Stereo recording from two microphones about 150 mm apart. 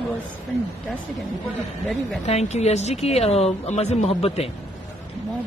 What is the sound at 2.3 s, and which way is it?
A woman's voice, 45° left (ahead or behind).